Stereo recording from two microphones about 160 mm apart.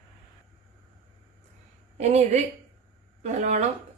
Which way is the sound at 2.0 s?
45° right (ahead or behind).